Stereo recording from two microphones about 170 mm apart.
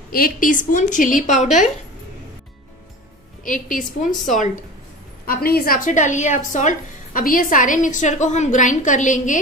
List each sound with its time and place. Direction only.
0.1 s a woman's voice: 55° left (ahead or behind)
3.4 s a woman's voice: 50° left (ahead or behind)
5.2 s a woman's voice: 60° left (ahead or behind)